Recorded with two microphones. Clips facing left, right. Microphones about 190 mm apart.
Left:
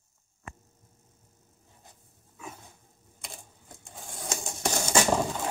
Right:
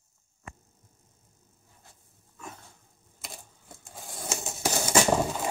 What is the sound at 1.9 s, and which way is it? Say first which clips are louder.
Dog: left 2 dB; 20° left (ahead or behind).